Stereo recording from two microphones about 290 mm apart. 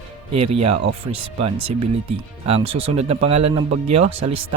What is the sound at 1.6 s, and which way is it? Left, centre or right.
Speech, right.